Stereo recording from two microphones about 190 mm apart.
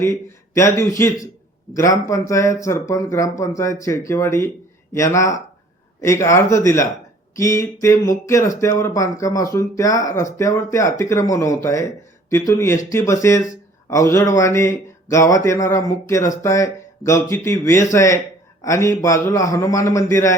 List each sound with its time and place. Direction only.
0.0 s speech: 15° left (ahead or behind)